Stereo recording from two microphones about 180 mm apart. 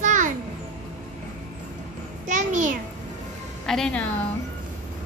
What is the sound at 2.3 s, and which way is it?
Speech, 45° right (ahead or behind).